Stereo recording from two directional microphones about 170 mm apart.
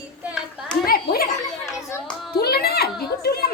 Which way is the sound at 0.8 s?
60° left (ahead or behind).